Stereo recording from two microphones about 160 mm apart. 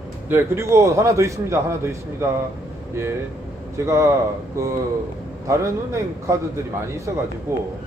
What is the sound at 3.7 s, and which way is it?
Speech, 15° right (ahead or behind).